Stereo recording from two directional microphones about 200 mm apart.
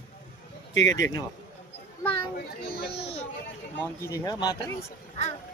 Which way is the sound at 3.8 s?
15° left (ahead or behind).